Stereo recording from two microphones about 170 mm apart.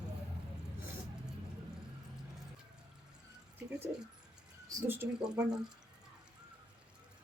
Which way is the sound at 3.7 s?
15° right (ahead or behind).